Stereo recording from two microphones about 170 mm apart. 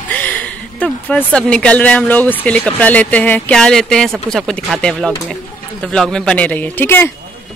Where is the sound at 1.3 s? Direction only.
5° left (ahead or behind).